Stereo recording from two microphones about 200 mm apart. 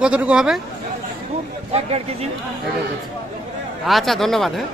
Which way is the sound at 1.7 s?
30° right (ahead or behind).